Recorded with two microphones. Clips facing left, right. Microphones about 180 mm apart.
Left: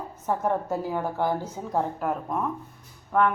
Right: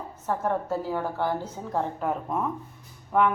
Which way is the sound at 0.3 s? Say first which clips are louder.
Left 1 dB; 15° left (ahead or behind).